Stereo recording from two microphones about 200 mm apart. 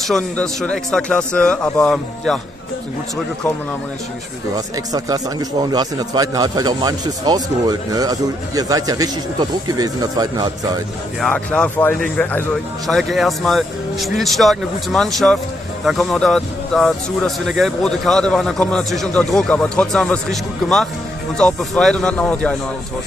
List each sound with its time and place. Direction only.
0.0 s a man's voice: centre (ahead or behind)
4.6 s a man's voice: 15° right (ahead or behind)
11.1 s a man's voice: 5° left (ahead or behind)